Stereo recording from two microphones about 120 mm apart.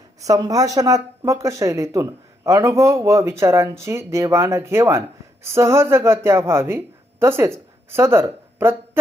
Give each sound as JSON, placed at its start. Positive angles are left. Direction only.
{"t": 0.2, "sound": "speech", "side_deg": -30}